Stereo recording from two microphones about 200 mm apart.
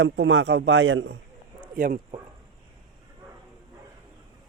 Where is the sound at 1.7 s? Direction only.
45° right (ahead or behind).